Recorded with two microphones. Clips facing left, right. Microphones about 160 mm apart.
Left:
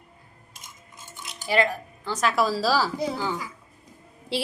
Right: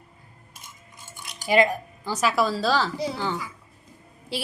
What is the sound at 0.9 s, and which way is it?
Cutlery, 20° left (ahead or behind).